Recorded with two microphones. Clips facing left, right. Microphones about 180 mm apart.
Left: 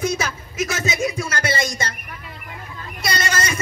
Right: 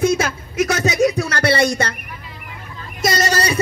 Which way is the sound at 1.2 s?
65° right (ahead or behind).